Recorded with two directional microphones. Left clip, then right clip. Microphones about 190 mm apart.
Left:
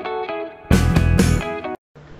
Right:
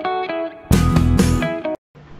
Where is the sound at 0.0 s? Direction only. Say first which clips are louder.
Right 4 dB; centre (ahead or behind).